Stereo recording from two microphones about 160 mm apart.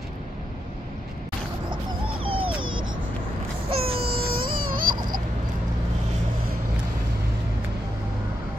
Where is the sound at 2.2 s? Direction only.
35° right (ahead or behind).